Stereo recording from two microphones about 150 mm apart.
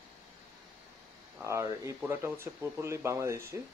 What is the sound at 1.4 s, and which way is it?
Speech, 20° right (ahead or behind).